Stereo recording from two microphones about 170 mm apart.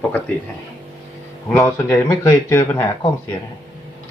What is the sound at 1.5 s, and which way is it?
Speech, 15° left (ahead or behind).